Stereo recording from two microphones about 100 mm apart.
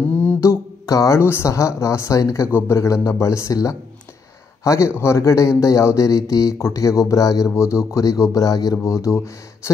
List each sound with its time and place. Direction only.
0.1 s mantra: 20° left (ahead or behind)
0.4 s speech: 30° left (ahead or behind)
4.9 s speech: 25° left (ahead or behind)